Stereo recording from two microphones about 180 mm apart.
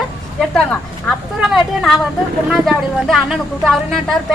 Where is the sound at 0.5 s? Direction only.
5° left (ahead or behind).